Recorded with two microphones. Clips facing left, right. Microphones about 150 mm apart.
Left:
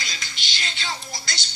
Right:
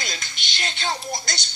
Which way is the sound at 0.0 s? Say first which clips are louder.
Right 2 dB; 55° right (ahead or behind).